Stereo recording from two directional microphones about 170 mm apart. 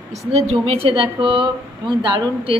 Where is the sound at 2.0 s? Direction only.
25° right (ahead or behind).